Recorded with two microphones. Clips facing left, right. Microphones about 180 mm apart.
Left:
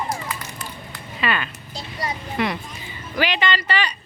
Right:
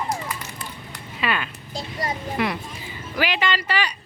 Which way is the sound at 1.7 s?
50° right (ahead or behind).